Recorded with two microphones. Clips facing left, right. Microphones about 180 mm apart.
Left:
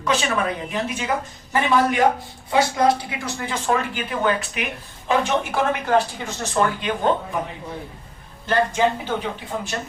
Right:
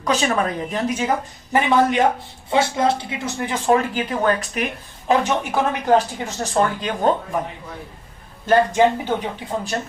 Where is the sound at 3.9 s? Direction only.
40° right (ahead or behind).